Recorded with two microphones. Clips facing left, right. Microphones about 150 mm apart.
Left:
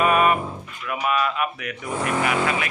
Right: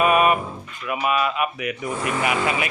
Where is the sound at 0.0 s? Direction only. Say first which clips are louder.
Right 1 dB; 10° right (ahead or behind).